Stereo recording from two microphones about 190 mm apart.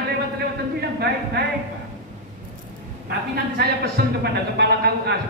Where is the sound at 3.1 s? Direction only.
60° right (ahead or behind).